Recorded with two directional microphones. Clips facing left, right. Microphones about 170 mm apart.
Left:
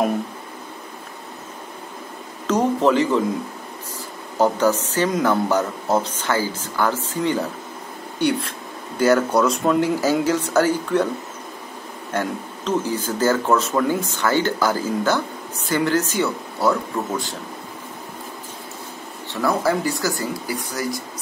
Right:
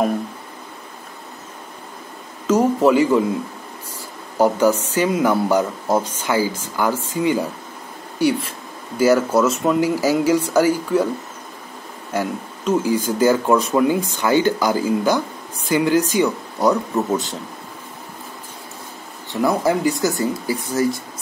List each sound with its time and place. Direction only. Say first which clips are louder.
2.4 s a sound: right 3 dB; 10° right (ahead or behind)
4.4 s speech: right 2 dB; 10° right (ahead or behind)
12.1 s speech: right 1 dB; 10° right (ahead or behind)
19.4 s speech: right 3 dB; 15° right (ahead or behind)